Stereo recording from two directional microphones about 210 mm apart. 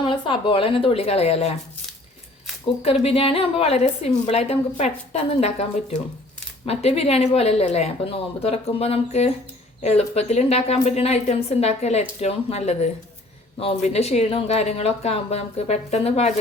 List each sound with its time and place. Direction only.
0.0 s speech: 25° left (ahead or behind)
3.0 s speech: 25° left (ahead or behind)
6.7 s a woman's voice: 30° left (ahead or behind)